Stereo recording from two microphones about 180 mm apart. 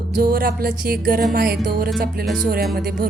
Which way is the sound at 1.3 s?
55° right (ahead or behind).